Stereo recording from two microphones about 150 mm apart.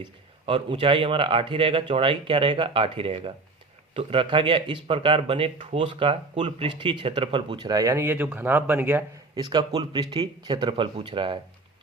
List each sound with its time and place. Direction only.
0.4 s speech: 35° right (ahead or behind); by 9.0 s 15° right (ahead or behind)
9.3 s speech: 30° right (ahead or behind)